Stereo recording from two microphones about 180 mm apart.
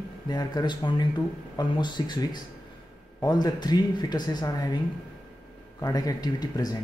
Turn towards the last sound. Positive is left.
turn(degrees=20)  # may be behind; listen again after turning